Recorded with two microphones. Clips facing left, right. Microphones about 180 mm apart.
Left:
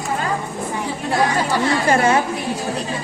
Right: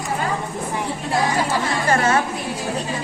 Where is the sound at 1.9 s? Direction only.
15° left (ahead or behind).